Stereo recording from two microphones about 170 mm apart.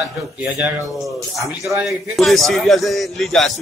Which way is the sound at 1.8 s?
Centre (ahead or behind).